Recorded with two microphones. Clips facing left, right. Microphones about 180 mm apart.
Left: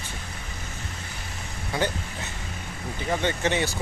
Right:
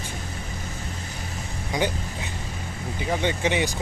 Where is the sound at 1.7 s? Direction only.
15° right (ahead or behind).